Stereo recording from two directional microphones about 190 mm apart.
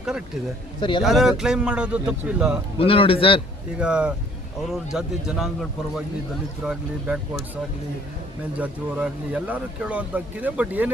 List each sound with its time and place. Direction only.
0.8 s a man's voice: 25° left (ahead or behind)
1.0 s a man's voice: centre (ahead or behind)
2.7 s a man's voice: 30° left (ahead or behind)
3.8 s a man's voice: 5° right (ahead or behind)